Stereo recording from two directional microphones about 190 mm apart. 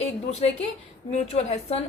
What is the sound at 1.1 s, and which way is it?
Speech, 35° left (ahead or behind).